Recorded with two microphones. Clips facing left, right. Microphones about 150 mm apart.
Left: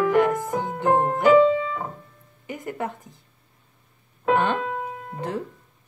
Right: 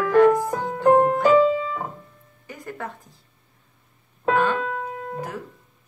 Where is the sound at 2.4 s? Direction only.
20° left (ahead or behind).